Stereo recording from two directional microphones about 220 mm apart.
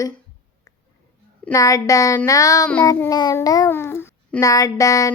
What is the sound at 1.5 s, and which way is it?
Child singing, 15° left (ahead or behind).